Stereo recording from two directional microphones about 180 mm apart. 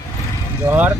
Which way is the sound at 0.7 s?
10° right (ahead or behind).